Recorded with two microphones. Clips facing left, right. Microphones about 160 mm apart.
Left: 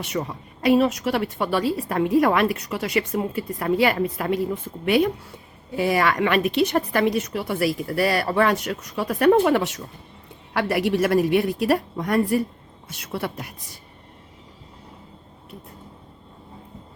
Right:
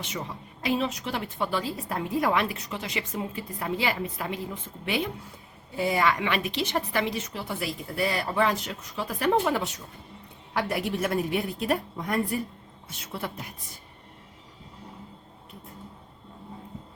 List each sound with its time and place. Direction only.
0.6 s a woman's voice: 65° left (ahead or behind)
5.7 s a woman's voice: 75° left (ahead or behind)